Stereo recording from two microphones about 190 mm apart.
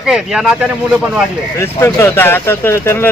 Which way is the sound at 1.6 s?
15° left (ahead or behind).